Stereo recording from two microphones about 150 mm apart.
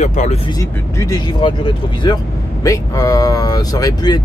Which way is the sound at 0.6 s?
25° left (ahead or behind).